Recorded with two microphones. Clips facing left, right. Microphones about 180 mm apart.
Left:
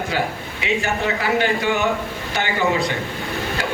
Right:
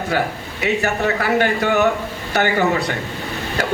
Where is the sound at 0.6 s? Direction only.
45° right (ahead or behind).